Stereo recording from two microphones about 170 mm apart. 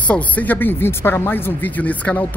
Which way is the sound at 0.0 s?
10° left (ahead or behind).